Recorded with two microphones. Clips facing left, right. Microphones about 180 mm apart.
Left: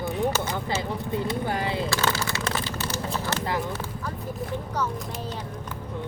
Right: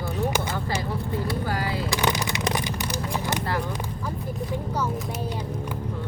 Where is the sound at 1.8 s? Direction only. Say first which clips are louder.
Right 1 dB; 15° right (ahead or behind).